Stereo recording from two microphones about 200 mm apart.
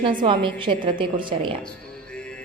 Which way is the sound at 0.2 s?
25° right (ahead or behind).